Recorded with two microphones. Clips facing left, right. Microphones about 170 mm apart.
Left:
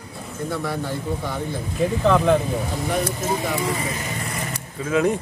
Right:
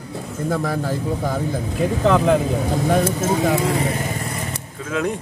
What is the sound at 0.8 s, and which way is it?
Speech, 45° right (ahead or behind).